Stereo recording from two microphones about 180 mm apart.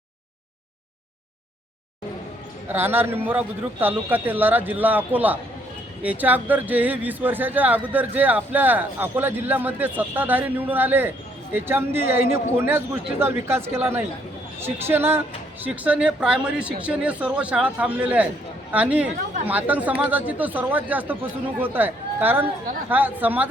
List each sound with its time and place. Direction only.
2.6 s speech: 10° right (ahead or behind)